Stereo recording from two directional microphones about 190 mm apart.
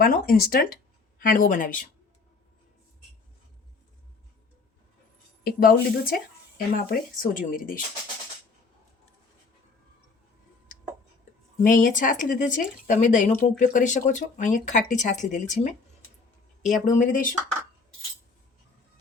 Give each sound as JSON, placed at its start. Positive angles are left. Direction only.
{"t": 0.0, "sound": "speech", "side_deg": 50}
{"t": 5.4, "sound": "speech", "side_deg": 50}
{"t": 11.6, "sound": "speech", "side_deg": 45}
{"t": 16.6, "sound": "speech", "side_deg": 40}